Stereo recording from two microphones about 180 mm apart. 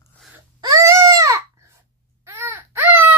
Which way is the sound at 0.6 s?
20° right (ahead or behind).